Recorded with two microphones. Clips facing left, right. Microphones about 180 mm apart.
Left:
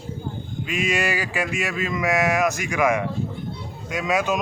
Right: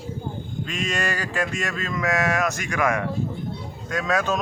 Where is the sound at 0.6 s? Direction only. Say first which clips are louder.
Left 4 dB; 10° left (ahead or behind).